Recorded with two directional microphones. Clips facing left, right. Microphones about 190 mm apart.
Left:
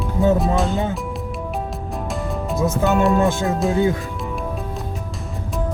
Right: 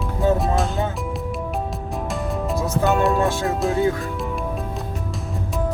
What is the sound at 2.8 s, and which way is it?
Speech, centre (ahead or behind).